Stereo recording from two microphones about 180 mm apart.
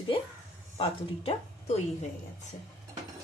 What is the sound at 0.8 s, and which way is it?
Speech, 30° left (ahead or behind).